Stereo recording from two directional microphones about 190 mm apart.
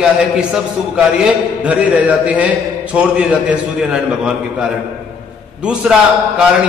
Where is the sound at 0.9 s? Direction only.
5° right (ahead or behind).